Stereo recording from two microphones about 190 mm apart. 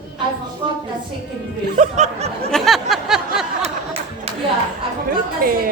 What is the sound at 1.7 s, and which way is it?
Speech, 35° right (ahead or behind).